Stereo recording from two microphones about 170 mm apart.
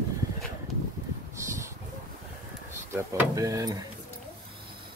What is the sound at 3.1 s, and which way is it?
Speech, 20° right (ahead or behind).